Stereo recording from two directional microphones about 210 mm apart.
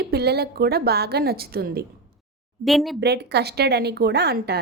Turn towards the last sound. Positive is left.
turn(degrees=-50)  # may be behind; listen again after turning